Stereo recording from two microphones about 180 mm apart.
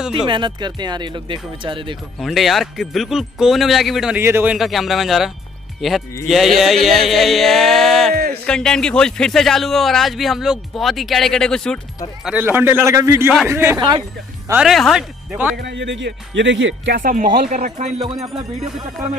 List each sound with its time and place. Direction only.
0.1 s speech: 25° right (ahead or behind)
2.1 s a man's voice: centre (ahead or behind)
8.1 s a sound: 60° right (ahead or behind)
8.5 s a man's voice: 5° left (ahead or behind)
12.3 s a man's voice: 10° right (ahead or behind)
14.5 s a man's voice: centre (ahead or behind)
15.5 s speech: 75° right (ahead or behind)
17.0 s speech: 50° right (ahead or behind)